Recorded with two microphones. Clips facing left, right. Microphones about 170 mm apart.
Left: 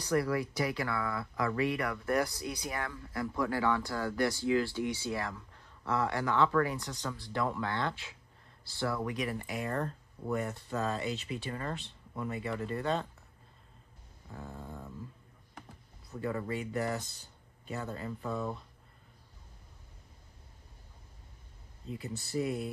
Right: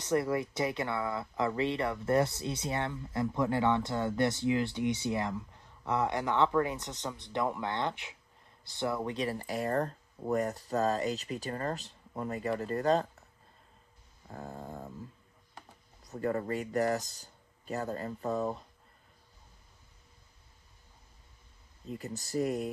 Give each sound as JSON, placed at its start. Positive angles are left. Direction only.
{"t": 0.0, "sound": "speech", "side_deg": -20}
{"t": 14.3, "sound": "speech", "side_deg": -40}
{"t": 16.0, "sound": "speech", "side_deg": -40}
{"t": 21.9, "sound": "speech", "side_deg": -40}